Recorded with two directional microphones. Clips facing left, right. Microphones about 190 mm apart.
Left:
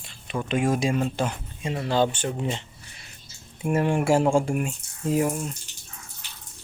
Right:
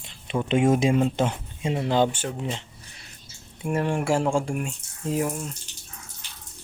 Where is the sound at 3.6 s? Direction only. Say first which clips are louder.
Left 2 dB; 5° left (ahead or behind).